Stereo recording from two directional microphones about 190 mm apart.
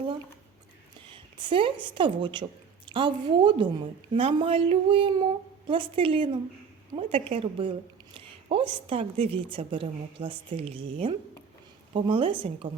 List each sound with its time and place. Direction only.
1.0 s a woman's voice: 25° right (ahead or behind)